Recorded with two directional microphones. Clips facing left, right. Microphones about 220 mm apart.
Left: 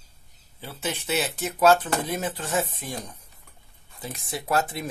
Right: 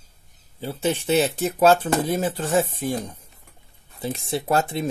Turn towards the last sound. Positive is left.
turn(degrees=-25)  # may be behind; listen again after turning